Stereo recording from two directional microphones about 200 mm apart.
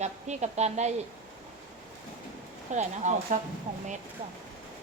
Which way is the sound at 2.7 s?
35° right (ahead or behind).